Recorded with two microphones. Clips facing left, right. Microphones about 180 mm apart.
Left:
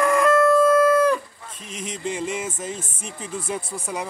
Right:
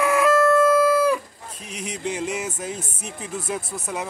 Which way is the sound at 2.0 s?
Centre (ahead or behind).